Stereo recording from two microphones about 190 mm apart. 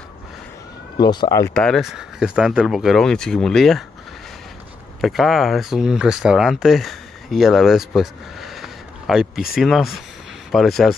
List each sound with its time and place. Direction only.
1.0 s speech: 20° left (ahead or behind)
1.5 s speech: 5° left (ahead or behind)
5.0 s speech: centre (ahead or behind)